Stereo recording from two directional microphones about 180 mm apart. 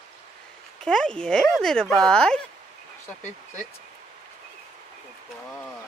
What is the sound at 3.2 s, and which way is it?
Speech, 40° left (ahead or behind).